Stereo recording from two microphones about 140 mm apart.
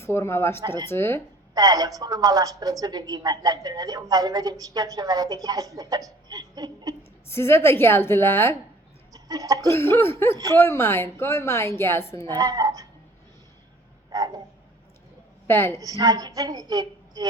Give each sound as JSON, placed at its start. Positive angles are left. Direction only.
{"t": 0.0, "sound": "a woman's voice", "side_deg": 20}
{"t": 1.5, "sound": "a woman's voice", "side_deg": -30}
{"t": 7.3, "sound": "a woman's voice", "side_deg": 15}
{"t": 9.1, "sound": "speech", "side_deg": -25}
{"t": 9.6, "sound": "a woman's voice", "side_deg": 20}
{"t": 10.3, "sound": "a woman's voice", "side_deg": -25}
{"t": 10.6, "sound": "a woman's voice", "side_deg": 15}
{"t": 12.3, "sound": "a woman's voice", "side_deg": -30}
{"t": 15.4, "sound": "a woman's voice", "side_deg": 15}
{"t": 15.8, "sound": "a woman's voice", "side_deg": -25}